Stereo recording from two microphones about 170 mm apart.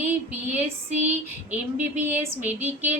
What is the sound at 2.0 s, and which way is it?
Speech, 10° right (ahead or behind).